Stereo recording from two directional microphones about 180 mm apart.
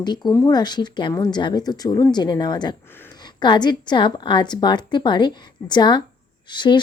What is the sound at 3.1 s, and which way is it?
Speech, 25° left (ahead or behind).